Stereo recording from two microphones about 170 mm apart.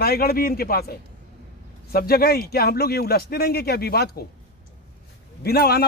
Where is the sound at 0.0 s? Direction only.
65° left (ahead or behind).